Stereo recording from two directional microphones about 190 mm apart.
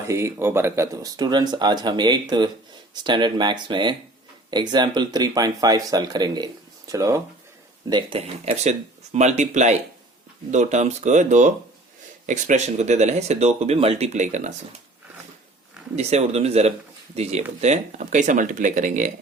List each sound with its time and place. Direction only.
0.1 s speech: 15° right (ahead or behind); by 14.5 s 40° right (ahead or behind)
16.0 s speech: 35° right (ahead or behind)